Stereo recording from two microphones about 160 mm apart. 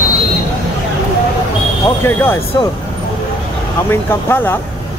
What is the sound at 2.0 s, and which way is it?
Speech, 15° left (ahead or behind).